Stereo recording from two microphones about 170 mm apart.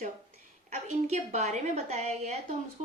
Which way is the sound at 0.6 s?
40° right (ahead or behind).